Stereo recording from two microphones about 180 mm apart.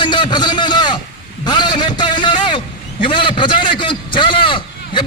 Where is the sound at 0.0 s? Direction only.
25° left (ahead or behind).